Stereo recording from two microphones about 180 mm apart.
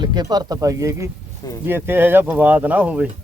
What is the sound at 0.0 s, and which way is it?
Speech, 25° right (ahead or behind).